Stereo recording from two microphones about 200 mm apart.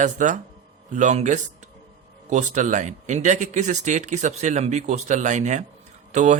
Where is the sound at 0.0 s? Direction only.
40° right (ahead or behind).